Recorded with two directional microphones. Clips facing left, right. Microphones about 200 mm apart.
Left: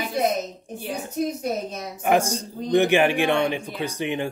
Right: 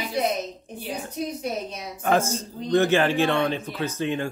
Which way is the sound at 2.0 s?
15° left (ahead or behind).